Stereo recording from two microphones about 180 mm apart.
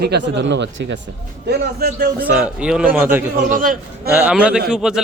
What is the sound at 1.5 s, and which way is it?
Speech, 60° right (ahead or behind).